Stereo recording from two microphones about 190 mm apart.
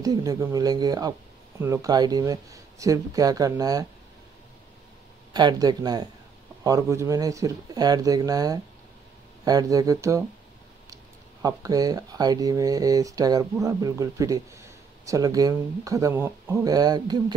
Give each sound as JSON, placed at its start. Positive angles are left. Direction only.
{"t": 0.0, "sound": "speech", "side_deg": -20}
{"t": 5.3, "sound": "speech", "side_deg": -20}
{"t": 11.4, "sound": "speech", "side_deg": -20}